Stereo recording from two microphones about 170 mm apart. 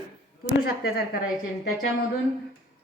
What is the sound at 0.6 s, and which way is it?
Speech, 65° left (ahead or behind).